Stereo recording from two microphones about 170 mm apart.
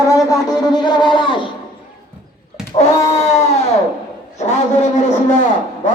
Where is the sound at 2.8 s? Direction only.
40° left (ahead or behind).